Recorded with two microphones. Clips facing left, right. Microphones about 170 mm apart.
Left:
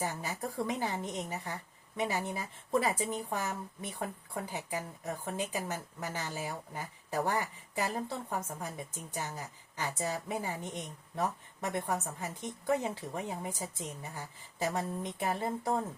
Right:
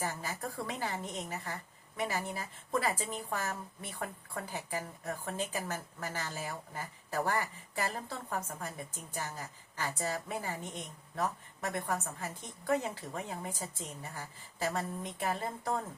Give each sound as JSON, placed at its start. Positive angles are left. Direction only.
{"t": 0.0, "sound": "a woman's voice", "side_deg": 20}